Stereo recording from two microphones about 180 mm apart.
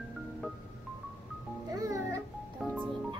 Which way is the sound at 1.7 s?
20° right (ahead or behind).